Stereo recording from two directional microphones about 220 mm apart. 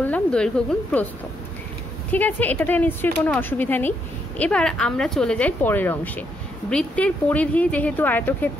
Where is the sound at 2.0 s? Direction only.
5° left (ahead or behind).